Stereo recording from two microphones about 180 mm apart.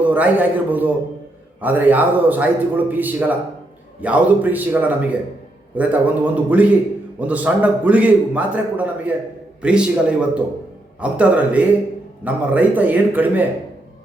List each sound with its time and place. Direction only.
0.0 s a man's voice: 10° right (ahead or behind)